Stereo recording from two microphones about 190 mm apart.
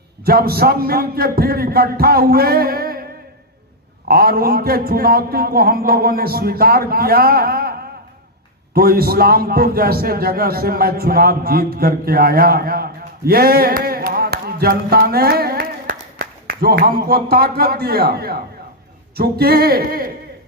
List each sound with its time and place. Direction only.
0.3 s a man's voice: 50° right (ahead or behind)
4.1 s a man's voice: 50° right (ahead or behind)
8.7 s a man's voice: 50° right (ahead or behind)